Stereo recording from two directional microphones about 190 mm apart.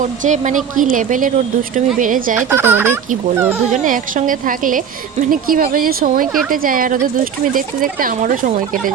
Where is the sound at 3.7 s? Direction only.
40° right (ahead or behind).